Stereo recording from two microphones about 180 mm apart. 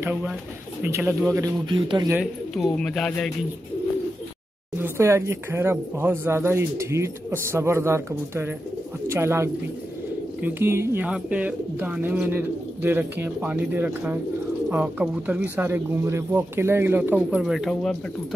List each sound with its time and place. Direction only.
0.0 s speech: 10° right (ahead or behind); by 2.1 s 25° right (ahead or behind)
2.5 s speech: 5° left (ahead or behind)
4.7 s speech: 15° right (ahead or behind)